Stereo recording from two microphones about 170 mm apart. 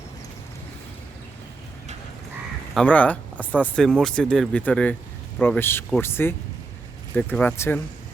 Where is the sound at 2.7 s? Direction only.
10° left (ahead or behind).